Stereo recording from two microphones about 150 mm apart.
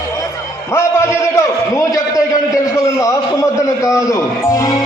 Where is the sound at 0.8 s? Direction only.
20° left (ahead or behind).